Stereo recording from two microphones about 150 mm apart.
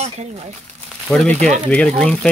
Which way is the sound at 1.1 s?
5° left (ahead or behind).